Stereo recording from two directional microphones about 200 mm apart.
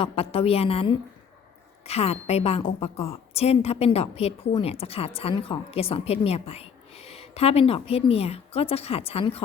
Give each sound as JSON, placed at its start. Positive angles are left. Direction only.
{"t": 0.0, "sound": "a woman's voice", "side_deg": 30}